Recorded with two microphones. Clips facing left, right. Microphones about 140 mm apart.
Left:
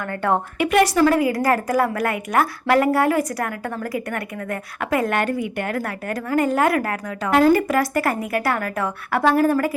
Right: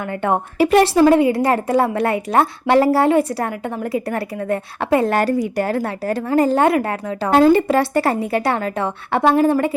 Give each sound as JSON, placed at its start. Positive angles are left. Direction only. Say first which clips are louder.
{"t": 0.6, "sound": "a woman's voice", "louder": "right 5 dB", "side_deg": -30}